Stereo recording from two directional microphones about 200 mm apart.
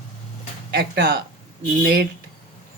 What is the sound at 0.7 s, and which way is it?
Speech, 55° right (ahead or behind).